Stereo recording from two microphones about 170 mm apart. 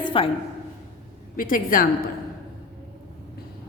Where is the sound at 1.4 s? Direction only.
55° left (ahead or behind).